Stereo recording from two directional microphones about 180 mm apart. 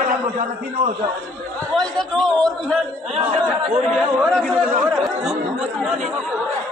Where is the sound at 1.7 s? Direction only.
5° left (ahead or behind).